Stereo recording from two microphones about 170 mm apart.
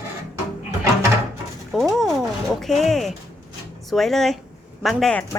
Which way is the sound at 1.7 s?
Centre (ahead or behind).